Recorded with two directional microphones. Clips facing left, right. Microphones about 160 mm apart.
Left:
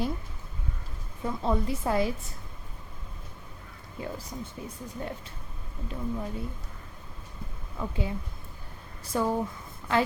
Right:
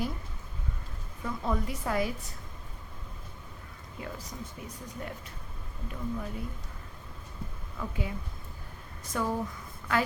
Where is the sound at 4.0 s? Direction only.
30° left (ahead or behind).